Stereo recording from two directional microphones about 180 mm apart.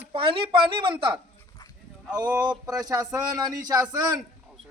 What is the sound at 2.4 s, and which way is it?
Speech, 20° right (ahead or behind).